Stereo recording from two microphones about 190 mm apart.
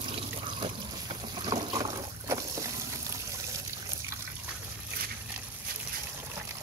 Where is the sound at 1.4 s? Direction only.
20° right (ahead or behind).